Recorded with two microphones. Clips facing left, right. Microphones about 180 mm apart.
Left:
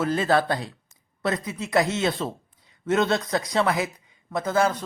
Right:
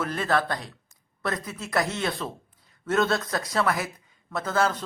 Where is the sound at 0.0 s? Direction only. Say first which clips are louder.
Left 4 dB; 30° left (ahead or behind).